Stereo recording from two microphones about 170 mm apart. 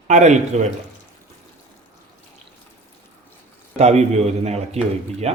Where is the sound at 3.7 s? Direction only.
40° right (ahead or behind).